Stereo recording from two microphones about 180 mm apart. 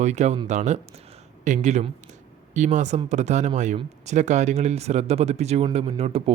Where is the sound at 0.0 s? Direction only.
40° right (ahead or behind).